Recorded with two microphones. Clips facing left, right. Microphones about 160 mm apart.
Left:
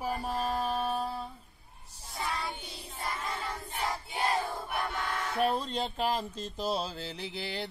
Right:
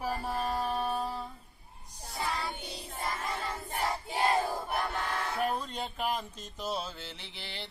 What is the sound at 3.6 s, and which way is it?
Child singing, 45° right (ahead or behind).